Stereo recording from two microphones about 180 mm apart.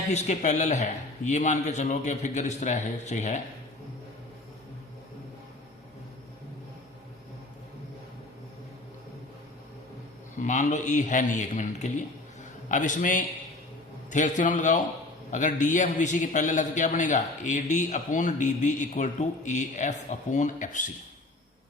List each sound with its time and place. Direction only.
0.1 s a man's voice: 40° left (ahead or behind)
10.3 s a man's voice: 45° left (ahead or behind)